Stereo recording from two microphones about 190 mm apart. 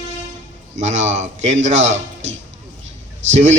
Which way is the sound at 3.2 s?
75° right (ahead or behind).